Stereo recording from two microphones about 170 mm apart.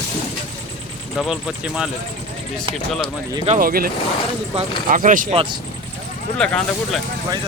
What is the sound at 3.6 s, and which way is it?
Speech, 60° right (ahead or behind).